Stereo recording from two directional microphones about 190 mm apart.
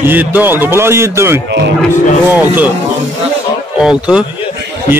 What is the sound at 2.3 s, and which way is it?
Speech, 10° right (ahead or behind).